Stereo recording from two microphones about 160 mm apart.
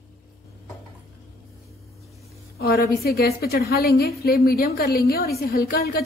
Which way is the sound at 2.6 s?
75° left (ahead or behind).